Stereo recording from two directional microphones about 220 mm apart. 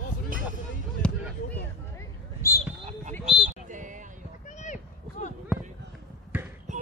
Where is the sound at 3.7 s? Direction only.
35° right (ahead or behind).